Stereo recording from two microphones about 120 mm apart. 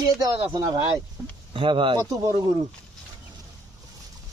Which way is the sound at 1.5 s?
45° right (ahead or behind).